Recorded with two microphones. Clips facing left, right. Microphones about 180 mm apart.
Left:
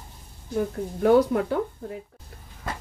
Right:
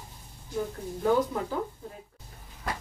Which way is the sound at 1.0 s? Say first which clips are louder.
Left 7 dB; 70° left (ahead or behind).